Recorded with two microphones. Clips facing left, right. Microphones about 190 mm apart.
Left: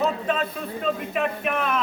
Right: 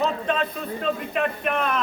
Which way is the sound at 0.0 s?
5° left (ahead or behind).